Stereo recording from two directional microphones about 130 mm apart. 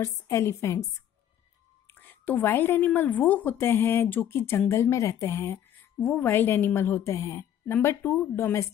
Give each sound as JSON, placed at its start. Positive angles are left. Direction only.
{"t": 0.0, "sound": "a woman's voice", "side_deg": 25}
{"t": 1.9, "sound": "a woman's voice", "side_deg": 15}